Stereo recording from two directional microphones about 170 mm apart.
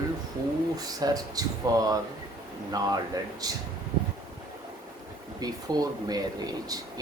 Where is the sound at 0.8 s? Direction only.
20° right (ahead or behind).